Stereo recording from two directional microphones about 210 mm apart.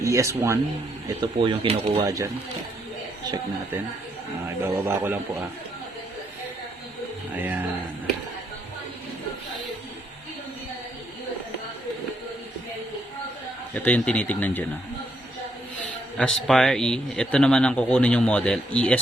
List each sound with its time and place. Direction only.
0.0 s speech: 15° right (ahead or behind)
2.0 s a man's voice: 15° right (ahead or behind)
4.4 s a man's voice: 10° right (ahead or behind)
7.3 s a man's voice: 10° right (ahead or behind)
13.7 s speech: 5° left (ahead or behind)
16.1 s speech: 5° left (ahead or behind)